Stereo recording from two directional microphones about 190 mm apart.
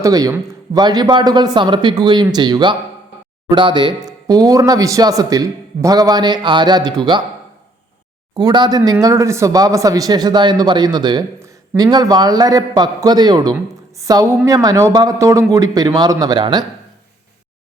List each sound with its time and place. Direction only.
0.0 s speech: 20° right (ahead or behind)
8.4 s a man's voice: 20° right (ahead or behind)